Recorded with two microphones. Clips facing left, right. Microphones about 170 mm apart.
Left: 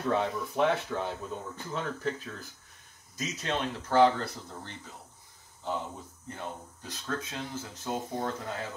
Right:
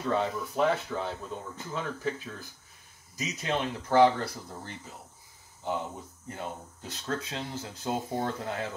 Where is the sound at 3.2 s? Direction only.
15° right (ahead or behind).